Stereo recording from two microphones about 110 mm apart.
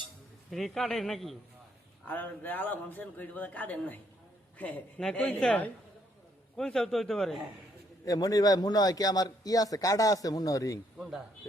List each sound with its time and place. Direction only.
0.5 s a man's voice: centre (ahead or behind)
2.0 s a man's voice: 15° left (ahead or behind)
8.0 s a man's voice: 35° left (ahead or behind)